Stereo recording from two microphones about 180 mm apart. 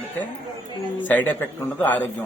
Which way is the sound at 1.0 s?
10° left (ahead or behind).